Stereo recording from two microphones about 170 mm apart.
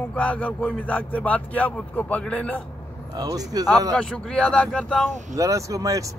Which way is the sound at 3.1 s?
20° right (ahead or behind).